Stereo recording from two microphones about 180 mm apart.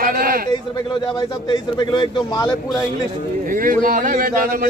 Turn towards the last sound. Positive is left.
turn(degrees=-50)  # may be behind; listen again after turning